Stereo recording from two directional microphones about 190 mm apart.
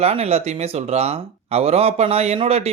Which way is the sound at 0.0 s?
35° right (ahead or behind).